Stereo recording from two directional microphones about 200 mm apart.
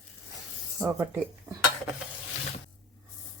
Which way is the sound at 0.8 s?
10° right (ahead or behind).